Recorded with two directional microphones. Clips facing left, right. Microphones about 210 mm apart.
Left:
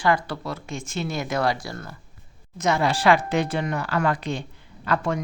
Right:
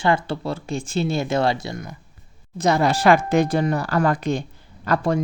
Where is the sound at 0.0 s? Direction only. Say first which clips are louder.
Right 2 dB; 25° right (ahead or behind).